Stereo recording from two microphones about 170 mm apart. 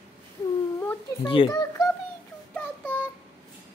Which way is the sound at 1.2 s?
30° left (ahead or behind).